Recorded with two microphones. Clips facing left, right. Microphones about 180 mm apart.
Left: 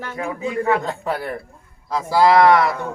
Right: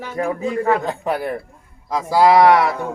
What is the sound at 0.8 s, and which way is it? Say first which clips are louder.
Speech: right 3 dB; 15° right (ahead or behind).